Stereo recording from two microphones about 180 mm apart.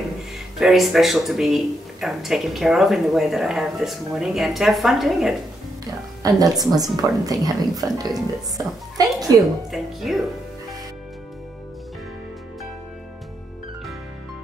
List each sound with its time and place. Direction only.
0.6 s speech: centre (ahead or behind)
6.2 s speech: 20° right (ahead or behind)
9.4 s speech: centre (ahead or behind)